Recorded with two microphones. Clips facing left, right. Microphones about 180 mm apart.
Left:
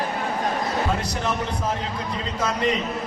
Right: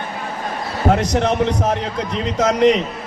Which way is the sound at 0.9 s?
85° right.